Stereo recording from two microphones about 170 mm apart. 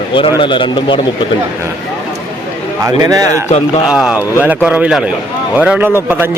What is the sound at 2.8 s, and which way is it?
Speech, 20° right (ahead or behind).